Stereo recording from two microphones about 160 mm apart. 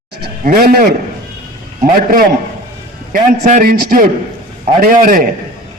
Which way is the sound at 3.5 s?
55° right (ahead or behind).